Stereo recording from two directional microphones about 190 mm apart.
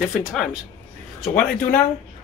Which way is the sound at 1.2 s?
5° left (ahead or behind).